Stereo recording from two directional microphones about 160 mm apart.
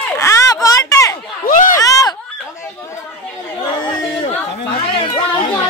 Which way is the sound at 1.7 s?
20° left (ahead or behind).